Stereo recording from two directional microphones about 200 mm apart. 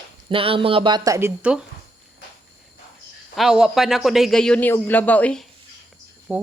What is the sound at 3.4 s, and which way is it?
A man's voice, centre (ahead or behind).